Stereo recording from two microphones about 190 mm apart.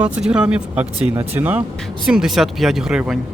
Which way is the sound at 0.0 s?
5° right (ahead or behind).